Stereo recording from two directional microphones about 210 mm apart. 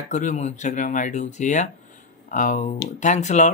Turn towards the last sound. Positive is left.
turn(degrees=35)  # may be behind; listen again after turning